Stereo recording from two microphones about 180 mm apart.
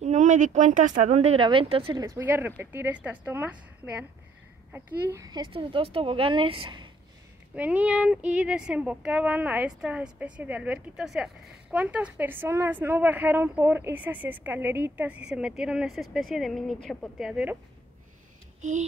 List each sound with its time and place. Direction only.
0.0 s speech: 40° right (ahead or behind)
2.0 s speech: 10° right (ahead or behind); by 6.9 s 25° right (ahead or behind)
7.5 s speech: 10° right (ahead or behind)
18.6 s speech: 40° right (ahead or behind)